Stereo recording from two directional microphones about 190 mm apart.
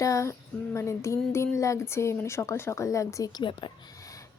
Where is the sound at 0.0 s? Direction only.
15° left (ahead or behind).